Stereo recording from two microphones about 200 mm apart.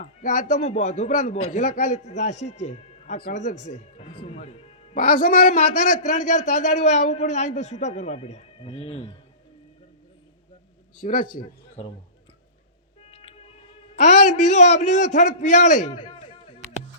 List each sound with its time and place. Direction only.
0.0 s a man's voice: 35° left (ahead or behind)
3.6 s music: 35° left (ahead or behind)
4.9 s a man's voice: 40° left (ahead or behind)
11.0 s a man's voice: 40° left (ahead or behind)
13.0 s music: 30° left (ahead or behind)
13.9 s a man's voice: 35° left (ahead or behind)